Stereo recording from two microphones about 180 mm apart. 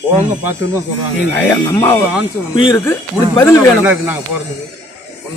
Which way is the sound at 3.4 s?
10° left (ahead or behind).